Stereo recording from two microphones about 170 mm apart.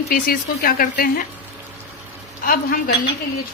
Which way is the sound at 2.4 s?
55° left (ahead or behind).